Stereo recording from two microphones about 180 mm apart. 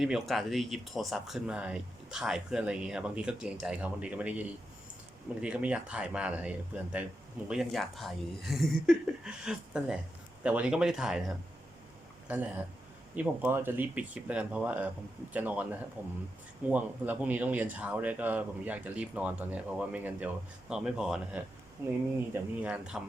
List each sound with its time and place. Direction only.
0.0 s speech: centre (ahead or behind)
12.3 s speech: 10° right (ahead or behind)
21.8 s speech: 15° right (ahead or behind)